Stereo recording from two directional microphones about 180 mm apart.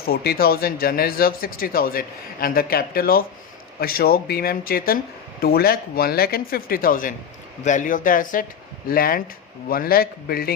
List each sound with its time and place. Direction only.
0.0 s speech: 60° left (ahead or behind)